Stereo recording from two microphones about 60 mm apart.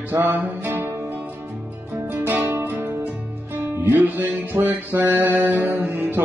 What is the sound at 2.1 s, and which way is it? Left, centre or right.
Guitar, right.